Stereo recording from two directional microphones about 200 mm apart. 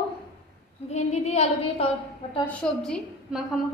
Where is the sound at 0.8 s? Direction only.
35° left (ahead or behind).